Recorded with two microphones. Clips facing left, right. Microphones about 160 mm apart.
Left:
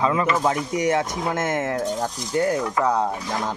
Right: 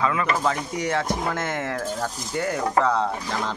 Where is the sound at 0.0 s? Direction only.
25° left (ahead or behind).